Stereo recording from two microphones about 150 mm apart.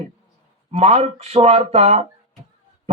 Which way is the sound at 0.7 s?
45° right (ahead or behind).